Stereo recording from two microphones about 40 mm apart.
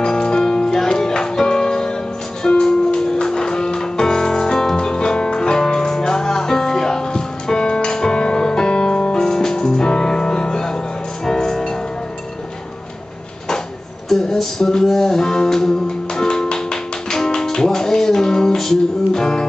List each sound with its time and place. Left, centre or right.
0.0 s music: left
14.0 s music: centre